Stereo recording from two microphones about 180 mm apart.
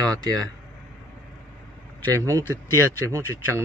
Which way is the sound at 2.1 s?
20° right (ahead or behind).